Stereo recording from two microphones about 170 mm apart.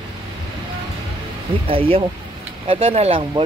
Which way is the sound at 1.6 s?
35° right (ahead or behind).